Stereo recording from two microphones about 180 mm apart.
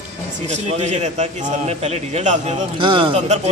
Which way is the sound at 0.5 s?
40° right (ahead or behind).